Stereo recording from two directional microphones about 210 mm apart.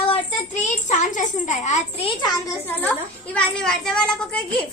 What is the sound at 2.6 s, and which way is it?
A child's voice, 10° left (ahead or behind).